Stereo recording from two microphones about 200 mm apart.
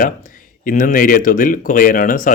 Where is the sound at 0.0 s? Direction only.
40° left (ahead or behind).